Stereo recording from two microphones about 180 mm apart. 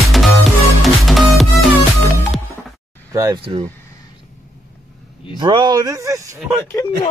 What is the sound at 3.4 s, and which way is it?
Speech, 30° right (ahead or behind).